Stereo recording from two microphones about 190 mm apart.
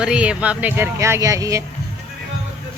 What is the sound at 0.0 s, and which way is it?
Speech, 5° right (ahead or behind).